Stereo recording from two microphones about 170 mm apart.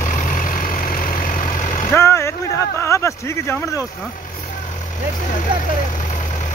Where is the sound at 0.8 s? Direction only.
55° left (ahead or behind).